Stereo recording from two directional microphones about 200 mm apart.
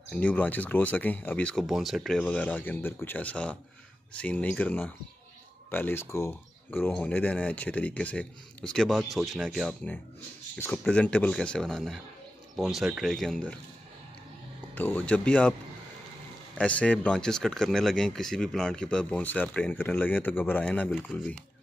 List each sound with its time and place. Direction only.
0.1 s speech: 5° left (ahead or behind)
14.8 s speech: 5° left (ahead or behind)
16.5 s speech: 5° left (ahead or behind)